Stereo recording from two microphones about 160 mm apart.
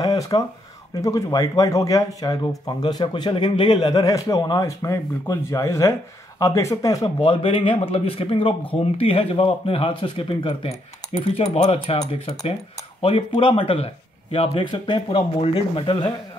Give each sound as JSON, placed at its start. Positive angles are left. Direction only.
{"t": 0.0, "sound": "speech", "side_deg": 20}